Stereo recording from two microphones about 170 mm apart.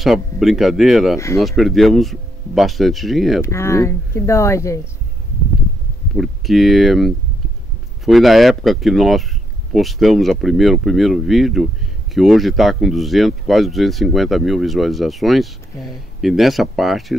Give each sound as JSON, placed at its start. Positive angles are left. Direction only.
{"t": 0.0, "sound": "speech", "side_deg": 0}
{"t": 1.1, "sound": "speech", "side_deg": 15}
{"t": 1.6, "sound": "speech", "side_deg": 0}
{"t": 3.4, "sound": "speech", "side_deg": 15}
{"t": 6.1, "sound": "speech", "side_deg": 0}